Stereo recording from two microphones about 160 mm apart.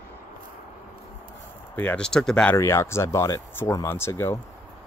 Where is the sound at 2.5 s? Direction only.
15° left (ahead or behind).